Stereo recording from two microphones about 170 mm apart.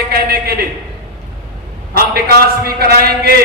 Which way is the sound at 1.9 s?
65° right (ahead or behind).